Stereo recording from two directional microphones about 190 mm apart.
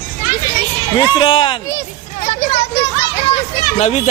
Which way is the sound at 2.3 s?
35° left (ahead or behind).